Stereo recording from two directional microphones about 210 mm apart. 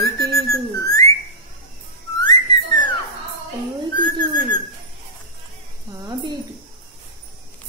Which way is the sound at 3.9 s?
20° left (ahead or behind).